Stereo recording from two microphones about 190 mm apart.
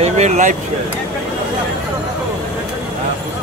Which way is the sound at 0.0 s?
35° right (ahead or behind).